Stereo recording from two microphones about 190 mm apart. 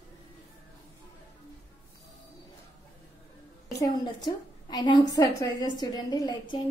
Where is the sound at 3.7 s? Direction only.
20° left (ahead or behind).